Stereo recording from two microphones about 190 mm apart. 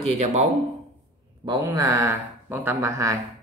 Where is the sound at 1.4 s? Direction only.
20° right (ahead or behind).